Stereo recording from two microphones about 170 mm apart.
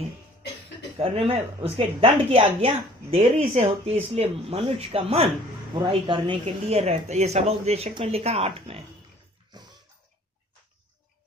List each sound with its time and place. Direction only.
0.9 s speech: 35° right (ahead or behind)
9.5 s bathtub: 25° right (ahead or behind)